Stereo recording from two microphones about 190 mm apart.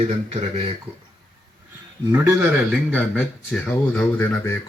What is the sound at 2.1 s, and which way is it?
Speech, 10° right (ahead or behind).